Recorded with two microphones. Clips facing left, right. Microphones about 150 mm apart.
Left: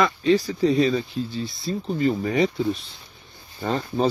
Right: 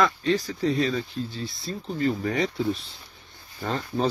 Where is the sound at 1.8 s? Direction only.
15° left (ahead or behind).